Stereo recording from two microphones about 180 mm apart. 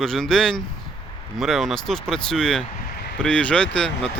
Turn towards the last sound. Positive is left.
turn(degrees=5)  # may be behind; listen again after turning